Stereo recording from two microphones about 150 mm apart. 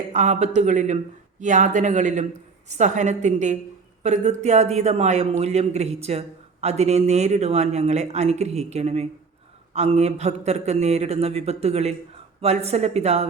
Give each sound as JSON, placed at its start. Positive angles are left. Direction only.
{"t": 0.1, "sound": "speech", "side_deg": -50}